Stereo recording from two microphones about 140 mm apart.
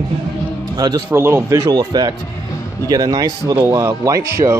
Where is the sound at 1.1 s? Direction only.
15° right (ahead or behind).